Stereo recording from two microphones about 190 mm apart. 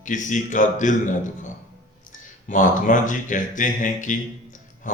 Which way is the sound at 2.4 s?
45° left (ahead or behind).